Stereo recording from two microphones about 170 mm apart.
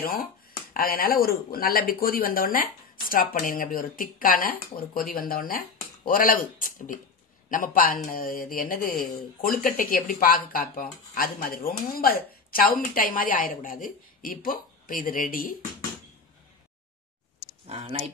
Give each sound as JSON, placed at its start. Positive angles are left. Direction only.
{"t": 0.7, "sound": "speech", "side_deg": 60}
{"t": 17.6, "sound": "speech", "side_deg": -35}